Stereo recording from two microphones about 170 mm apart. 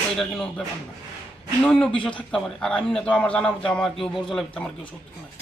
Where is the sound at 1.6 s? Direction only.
5° left (ahead or behind).